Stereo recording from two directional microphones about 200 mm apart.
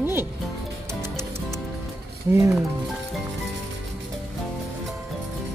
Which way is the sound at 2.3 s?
15° right (ahead or behind).